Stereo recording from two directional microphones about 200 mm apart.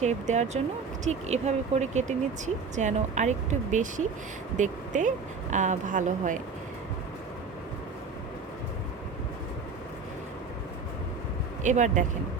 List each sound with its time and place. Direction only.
0.0 s speech: 35° right (ahead or behind)
11.6 s speech: 35° right (ahead or behind)